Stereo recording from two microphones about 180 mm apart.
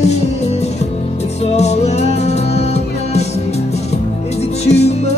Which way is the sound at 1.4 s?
35° left (ahead or behind).